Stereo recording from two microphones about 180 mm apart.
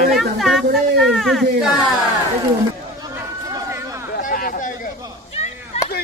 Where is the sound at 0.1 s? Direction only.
Centre (ahead or behind).